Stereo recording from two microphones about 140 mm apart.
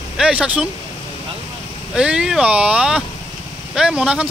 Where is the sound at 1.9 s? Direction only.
5° right (ahead or behind).